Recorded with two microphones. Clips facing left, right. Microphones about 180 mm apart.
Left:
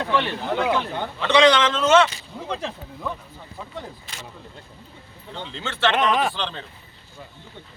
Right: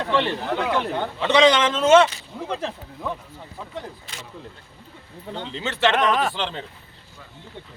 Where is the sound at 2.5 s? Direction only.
10° right (ahead or behind).